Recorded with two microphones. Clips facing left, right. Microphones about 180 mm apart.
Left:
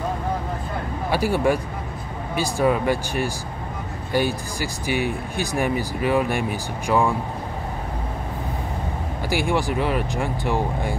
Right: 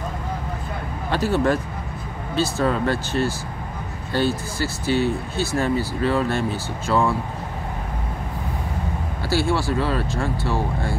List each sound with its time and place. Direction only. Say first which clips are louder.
1.1 s speech: even; 10° left (ahead or behind)
9.3 s speech: right 1 dB; 15° left (ahead or behind)